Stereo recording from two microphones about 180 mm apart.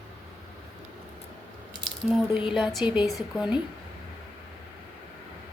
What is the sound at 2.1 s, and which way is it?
Speech, 5° right (ahead or behind).